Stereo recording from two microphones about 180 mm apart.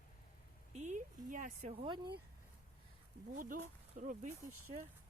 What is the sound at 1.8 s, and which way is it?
Speech, 25° right (ahead or behind).